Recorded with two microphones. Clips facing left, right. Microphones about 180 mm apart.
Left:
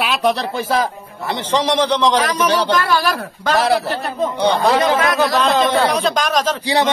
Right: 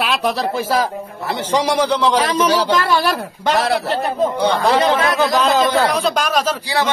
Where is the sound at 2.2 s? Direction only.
25° right (ahead or behind).